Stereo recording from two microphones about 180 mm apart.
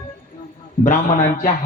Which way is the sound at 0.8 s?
50° left (ahead or behind).